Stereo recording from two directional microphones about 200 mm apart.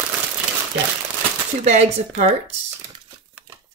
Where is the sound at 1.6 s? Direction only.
35° right (ahead or behind).